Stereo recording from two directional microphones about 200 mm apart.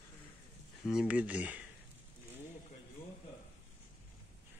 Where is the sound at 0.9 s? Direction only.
5° right (ahead or behind).